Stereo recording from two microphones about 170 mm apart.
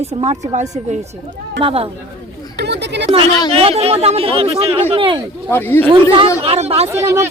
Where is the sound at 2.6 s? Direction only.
80° right.